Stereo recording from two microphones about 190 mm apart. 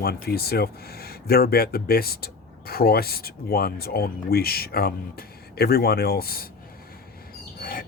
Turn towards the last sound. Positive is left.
turn(degrees=50)  # may be behind; listen again after turning